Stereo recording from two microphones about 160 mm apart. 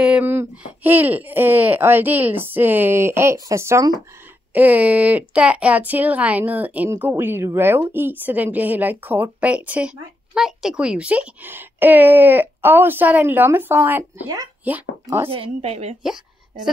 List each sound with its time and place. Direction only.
0.0 s speech: 10° right (ahead or behind)
15.2 s a woman's voice: 35° right (ahead or behind)